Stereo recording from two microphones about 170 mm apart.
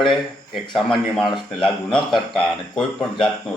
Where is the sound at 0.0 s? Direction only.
Centre (ahead or behind).